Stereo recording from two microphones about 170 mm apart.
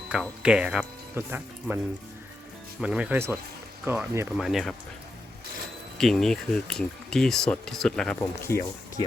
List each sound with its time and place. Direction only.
0.1 s speech: 5° right (ahead or behind)
2.8 s speech: 5° right (ahead or behind)
4.4 s speech: centre (ahead or behind)
6.0 s speech: centre (ahead or behind)
8.4 s speech: 15° left (ahead or behind)